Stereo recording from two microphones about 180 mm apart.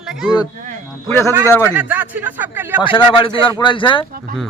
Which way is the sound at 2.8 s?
25° left (ahead or behind).